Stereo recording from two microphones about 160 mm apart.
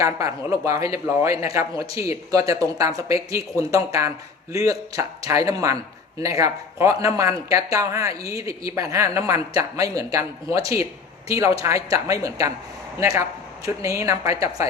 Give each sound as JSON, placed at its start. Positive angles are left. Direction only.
{"t": 0.0, "sound": "speech", "side_deg": -20}